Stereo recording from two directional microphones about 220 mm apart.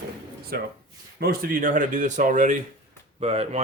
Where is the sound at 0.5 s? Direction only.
45° right (ahead or behind).